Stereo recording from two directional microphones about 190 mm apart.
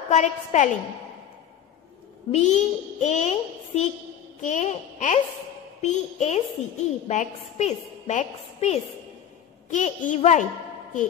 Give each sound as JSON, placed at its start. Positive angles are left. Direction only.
{"t": 0.1, "sound": "a woman's voice", "side_deg": 40}
{"t": 2.3, "sound": "a woman's voice", "side_deg": 40}